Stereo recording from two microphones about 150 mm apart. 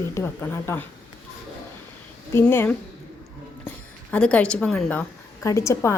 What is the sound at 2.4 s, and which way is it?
A woman's voice, 10° left (ahead or behind).